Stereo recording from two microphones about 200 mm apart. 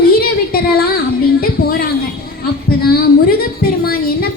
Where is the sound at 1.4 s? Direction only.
50° left (ahead or behind).